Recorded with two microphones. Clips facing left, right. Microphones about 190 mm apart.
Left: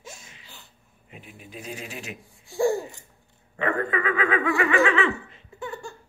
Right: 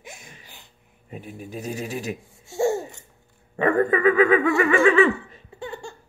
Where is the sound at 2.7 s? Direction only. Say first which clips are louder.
Right 1 dB; 25° right (ahead or behind).